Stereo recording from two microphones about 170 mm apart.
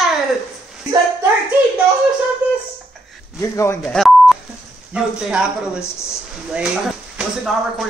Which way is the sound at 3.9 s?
Centre (ahead or behind).